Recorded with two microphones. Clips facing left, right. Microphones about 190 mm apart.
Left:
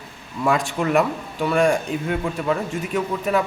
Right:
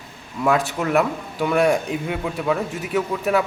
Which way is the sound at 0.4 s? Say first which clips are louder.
Right 1 dB; 5° right (ahead or behind).